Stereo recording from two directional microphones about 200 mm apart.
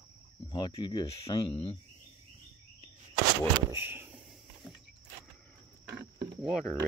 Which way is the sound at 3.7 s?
10° right (ahead or behind).